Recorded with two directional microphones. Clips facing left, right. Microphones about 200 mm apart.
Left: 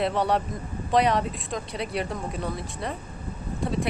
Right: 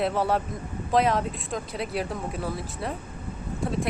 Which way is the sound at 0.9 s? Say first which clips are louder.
Left 1 dB; centre (ahead or behind).